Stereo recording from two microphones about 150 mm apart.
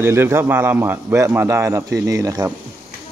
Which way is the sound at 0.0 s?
15° right (ahead or behind).